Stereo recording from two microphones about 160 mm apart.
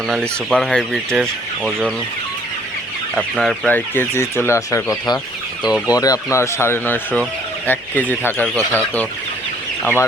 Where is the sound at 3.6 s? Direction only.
10° left (ahead or behind).